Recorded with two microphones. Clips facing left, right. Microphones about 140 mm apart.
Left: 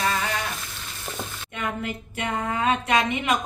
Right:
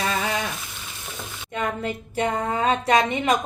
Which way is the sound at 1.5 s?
35° right (ahead or behind).